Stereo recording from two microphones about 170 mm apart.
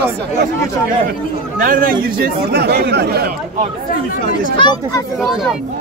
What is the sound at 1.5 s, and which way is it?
Speech, 55° right (ahead or behind).